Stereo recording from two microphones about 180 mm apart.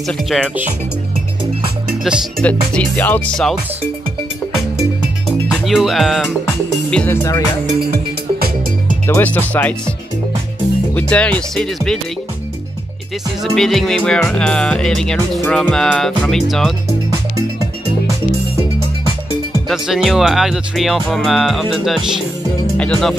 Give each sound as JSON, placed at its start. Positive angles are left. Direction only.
{"t": 0.3, "sound": "speech", "side_deg": -5}
{"t": 2.4, "sound": "music", "side_deg": 5}
{"t": 5.5, "sound": "music", "side_deg": 0}
{"t": 7.9, "sound": "music", "side_deg": -60}
{"t": 9.0, "sound": "music", "side_deg": 10}
{"t": 11.0, "sound": "music", "side_deg": 5}
{"t": 13.6, "sound": "speech", "side_deg": 0}
{"t": 19.7, "sound": "speech", "side_deg": 0}